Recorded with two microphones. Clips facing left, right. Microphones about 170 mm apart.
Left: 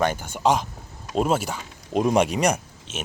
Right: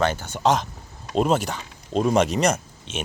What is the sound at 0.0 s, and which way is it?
A child's voice, 10° left (ahead or behind).